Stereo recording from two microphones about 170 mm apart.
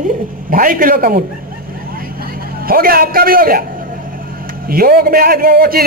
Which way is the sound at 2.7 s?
60° right (ahead or behind).